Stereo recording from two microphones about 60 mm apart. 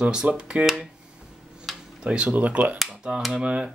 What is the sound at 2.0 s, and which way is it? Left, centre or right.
Speech, centre.